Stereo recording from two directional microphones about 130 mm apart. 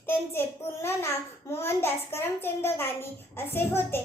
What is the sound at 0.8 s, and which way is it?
A child's voice, 20° left (ahead or behind).